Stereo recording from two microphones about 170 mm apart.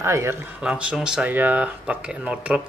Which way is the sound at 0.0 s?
15° right (ahead or behind).